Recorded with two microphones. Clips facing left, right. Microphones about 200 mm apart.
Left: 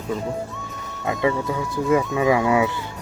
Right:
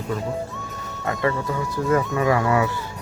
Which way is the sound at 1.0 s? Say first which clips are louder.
Left 2 dB; 5° left (ahead or behind).